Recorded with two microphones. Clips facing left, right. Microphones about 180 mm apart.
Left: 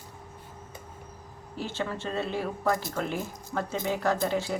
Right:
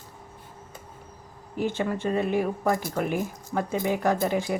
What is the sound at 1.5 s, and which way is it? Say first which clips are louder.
A woman's voice: right 6 dB; 15° right (ahead or behind).